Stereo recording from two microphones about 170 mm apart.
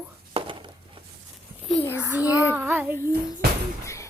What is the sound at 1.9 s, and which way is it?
Child singing, 10° right (ahead or behind).